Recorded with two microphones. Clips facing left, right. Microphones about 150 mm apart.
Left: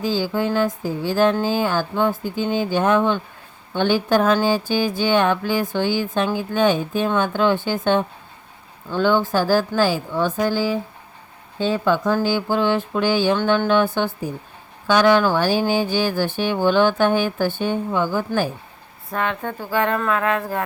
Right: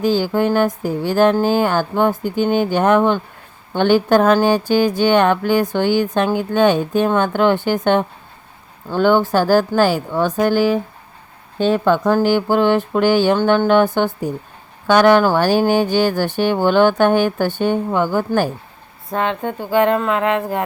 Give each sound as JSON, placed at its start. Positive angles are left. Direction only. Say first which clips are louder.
{"t": 0.0, "sound": "speech", "louder": "right 5 dB", "side_deg": -55}
{"t": 5.0, "sound": "music", "louder": "right 2 dB", "side_deg": -55}
{"t": 5.7, "sound": "speech", "louder": "right 5 dB", "side_deg": -55}
{"t": 19.1, "sound": "speech", "louder": "right 4 dB", "side_deg": -30}